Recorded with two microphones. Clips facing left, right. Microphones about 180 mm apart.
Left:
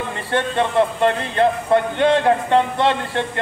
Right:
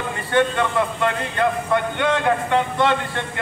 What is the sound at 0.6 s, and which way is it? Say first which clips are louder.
Speech: left 4 dB; 30° left (ahead or behind).